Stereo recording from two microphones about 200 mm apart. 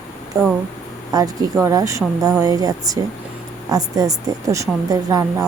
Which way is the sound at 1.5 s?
15° right (ahead or behind).